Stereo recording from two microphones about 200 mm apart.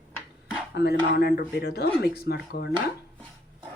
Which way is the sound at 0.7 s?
55° left (ahead or behind).